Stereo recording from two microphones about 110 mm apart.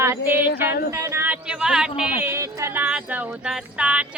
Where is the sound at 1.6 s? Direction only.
5° right (ahead or behind).